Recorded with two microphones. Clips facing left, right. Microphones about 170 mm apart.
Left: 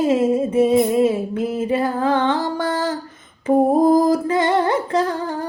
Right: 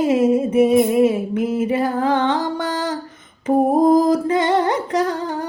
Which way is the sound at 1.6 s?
20° right (ahead or behind).